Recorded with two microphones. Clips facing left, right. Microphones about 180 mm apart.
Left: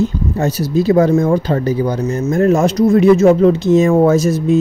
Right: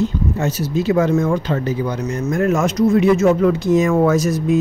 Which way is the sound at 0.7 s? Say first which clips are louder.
Left 5 dB; 35° left (ahead or behind).